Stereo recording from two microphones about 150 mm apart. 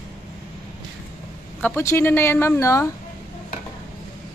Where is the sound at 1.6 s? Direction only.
15° left (ahead or behind).